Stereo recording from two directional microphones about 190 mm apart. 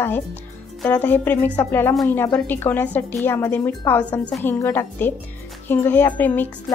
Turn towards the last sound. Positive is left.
turn(degrees=10)  # may be behind; listen again after turning